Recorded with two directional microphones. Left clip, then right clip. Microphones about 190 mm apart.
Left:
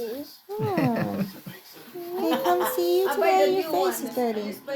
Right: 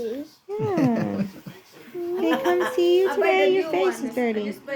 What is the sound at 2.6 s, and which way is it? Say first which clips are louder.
Speech: right 3 dB; 15° right (ahead or behind).